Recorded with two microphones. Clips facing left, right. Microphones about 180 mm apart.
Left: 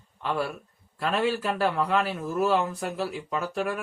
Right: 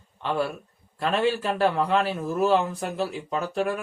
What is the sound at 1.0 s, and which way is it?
Speech, 5° left (ahead or behind).